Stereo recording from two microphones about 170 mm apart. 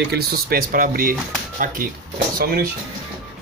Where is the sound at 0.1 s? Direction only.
65° right (ahead or behind).